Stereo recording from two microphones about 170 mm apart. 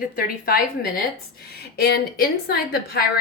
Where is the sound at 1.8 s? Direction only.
65° left (ahead or behind).